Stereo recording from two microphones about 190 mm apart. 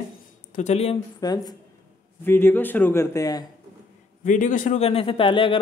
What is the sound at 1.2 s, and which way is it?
A man's voice, 20° left (ahead or behind).